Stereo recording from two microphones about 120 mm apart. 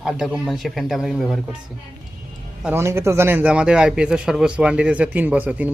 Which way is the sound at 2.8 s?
20° right (ahead or behind).